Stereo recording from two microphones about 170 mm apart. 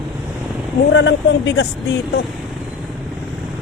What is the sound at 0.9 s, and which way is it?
Speech, 90° left.